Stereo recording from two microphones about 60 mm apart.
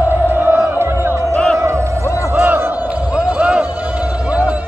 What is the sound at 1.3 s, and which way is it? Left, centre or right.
Music, centre.